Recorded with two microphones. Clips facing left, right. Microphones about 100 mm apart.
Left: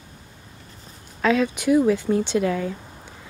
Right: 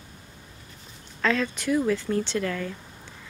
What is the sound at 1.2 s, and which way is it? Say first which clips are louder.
Speech: left 5 dB; 10° left (ahead or behind).